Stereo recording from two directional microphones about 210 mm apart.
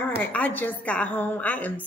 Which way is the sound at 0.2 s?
5° left (ahead or behind).